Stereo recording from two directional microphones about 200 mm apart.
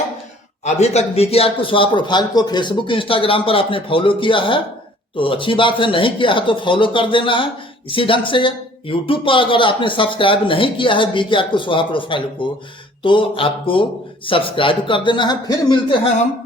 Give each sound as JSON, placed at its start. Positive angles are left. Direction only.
{"t": 0.6, "sound": "speech", "side_deg": 35}